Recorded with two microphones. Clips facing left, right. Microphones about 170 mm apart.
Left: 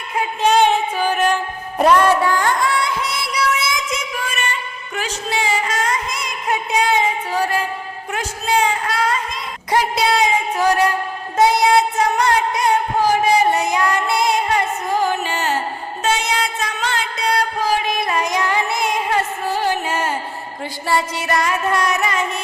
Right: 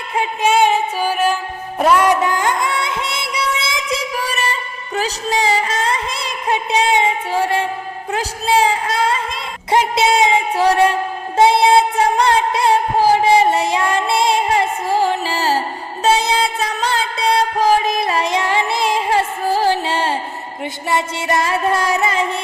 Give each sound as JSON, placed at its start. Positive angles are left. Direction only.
{"t": 0.4, "sound": "music", "side_deg": -5}
{"t": 2.2, "sound": "music", "side_deg": -20}
{"t": 8.1, "sound": "a sound", "side_deg": -30}
{"t": 9.7, "sound": "music", "side_deg": -20}
{"t": 18.0, "sound": "music", "side_deg": -30}